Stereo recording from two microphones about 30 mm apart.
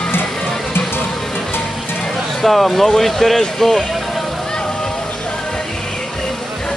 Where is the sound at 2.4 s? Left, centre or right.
Centre.